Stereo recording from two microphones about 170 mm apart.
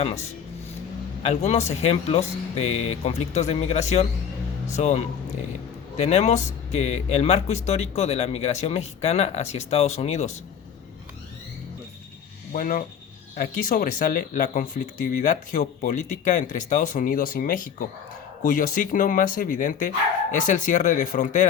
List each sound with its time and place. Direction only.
0.0 s speech: 35° left (ahead or behind)
12.5 s speech: 55° left (ahead or behind)